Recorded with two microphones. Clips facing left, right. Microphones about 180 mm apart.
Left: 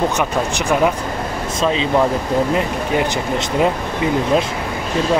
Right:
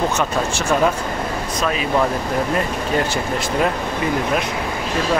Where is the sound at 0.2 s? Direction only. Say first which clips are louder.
Left 1 dB; 15° left (ahead or behind).